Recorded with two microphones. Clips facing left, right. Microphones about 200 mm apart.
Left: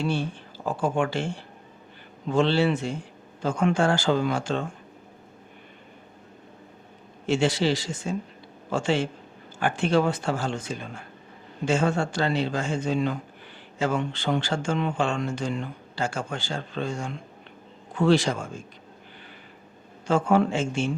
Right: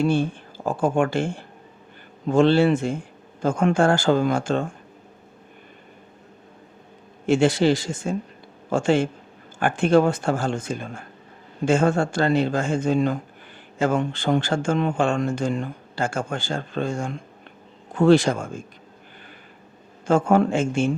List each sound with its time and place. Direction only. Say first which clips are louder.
0.0 s speech: right 6 dB; 50° right (ahead or behind)
7.3 s speech: right 5 dB; 50° right (ahead or behind)
20.1 s speech: right 3 dB; 50° right (ahead or behind)